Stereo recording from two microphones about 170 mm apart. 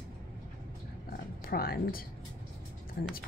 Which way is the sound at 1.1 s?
60° left (ahead or behind).